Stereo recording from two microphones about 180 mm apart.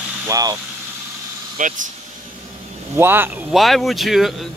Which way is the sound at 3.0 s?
10° right (ahead or behind).